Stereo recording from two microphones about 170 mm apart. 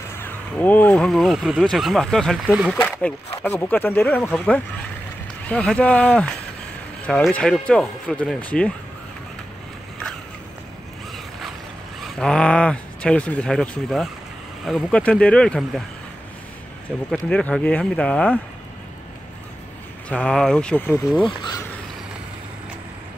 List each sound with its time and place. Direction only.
0.2 s speech: 10° left (ahead or behind)
12.2 s speech: 5° left (ahead or behind)
17.1 s speech: 5° left (ahead or behind)
20.1 s speech: 5° left (ahead or behind)